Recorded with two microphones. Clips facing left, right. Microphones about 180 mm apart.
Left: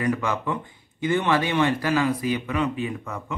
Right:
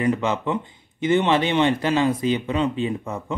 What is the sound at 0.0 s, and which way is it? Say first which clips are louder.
Speech: right 3 dB; 20° right (ahead or behind).